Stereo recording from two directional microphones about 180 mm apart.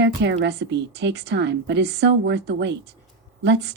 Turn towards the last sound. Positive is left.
turn(degrees=-75)  # may be behind; listen again after turning